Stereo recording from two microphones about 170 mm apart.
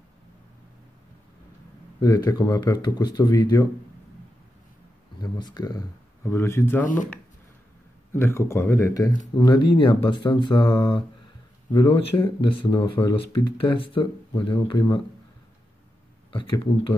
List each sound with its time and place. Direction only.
2.0 s speech: 20° left (ahead or behind)
5.2 s speech: 25° left (ahead or behind)
8.1 s speech: 15° left (ahead or behind)
16.3 s speech: 30° left (ahead or behind)